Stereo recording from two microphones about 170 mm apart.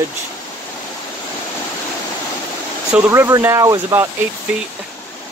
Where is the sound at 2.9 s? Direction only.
10° right (ahead or behind).